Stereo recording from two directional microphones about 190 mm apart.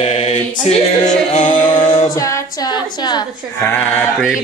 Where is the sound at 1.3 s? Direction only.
35° left (ahead or behind).